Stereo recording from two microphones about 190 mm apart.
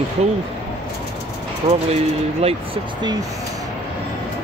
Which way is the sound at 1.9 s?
30° right (ahead or behind).